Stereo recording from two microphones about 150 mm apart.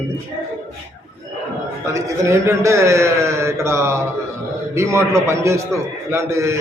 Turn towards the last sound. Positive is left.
turn(degrees=-20)  # may be behind; listen again after turning